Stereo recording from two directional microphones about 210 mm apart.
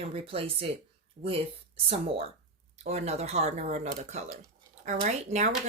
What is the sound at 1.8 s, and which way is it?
Speech, 30° right (ahead or behind).